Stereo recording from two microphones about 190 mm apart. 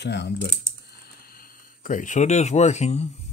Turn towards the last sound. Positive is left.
turn(degrees=35)  # may be behind; listen again after turning